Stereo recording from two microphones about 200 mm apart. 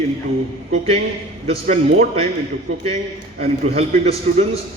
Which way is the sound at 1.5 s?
35° right (ahead or behind).